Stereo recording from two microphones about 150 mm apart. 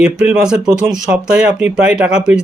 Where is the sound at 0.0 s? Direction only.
5° right (ahead or behind).